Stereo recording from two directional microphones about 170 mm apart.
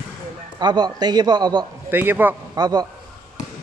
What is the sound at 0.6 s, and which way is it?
A man's voice, 25° right (ahead or behind).